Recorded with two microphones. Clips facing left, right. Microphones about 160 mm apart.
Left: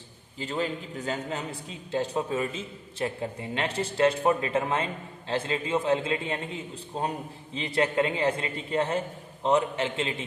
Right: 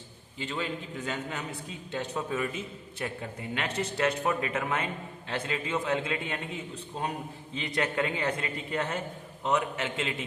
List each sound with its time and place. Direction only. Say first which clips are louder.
0.3 s a man's voice: left 4 dB; 40° left (ahead or behind)